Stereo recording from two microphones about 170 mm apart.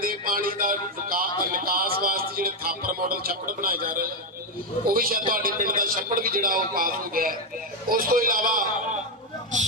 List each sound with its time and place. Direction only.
0.0 s speech: 55° right (ahead or behind)